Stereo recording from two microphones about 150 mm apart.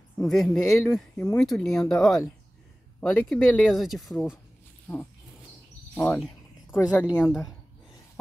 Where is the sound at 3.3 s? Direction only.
Centre (ahead or behind).